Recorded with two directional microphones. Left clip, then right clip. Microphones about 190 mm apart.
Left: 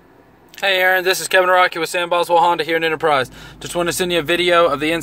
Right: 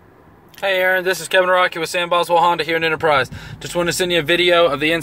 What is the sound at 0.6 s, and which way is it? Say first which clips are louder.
Speech: left 1 dB; centre (ahead or behind).